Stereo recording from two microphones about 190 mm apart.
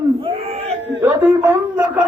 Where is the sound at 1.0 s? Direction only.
10° right (ahead or behind).